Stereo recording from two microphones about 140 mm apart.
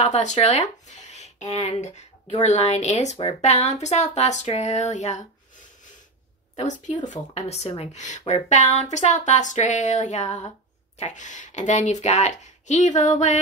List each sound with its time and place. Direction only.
0.0 s speech: 55° left (ahead or behind)
6.5 s a woman's voice: 55° left (ahead or behind)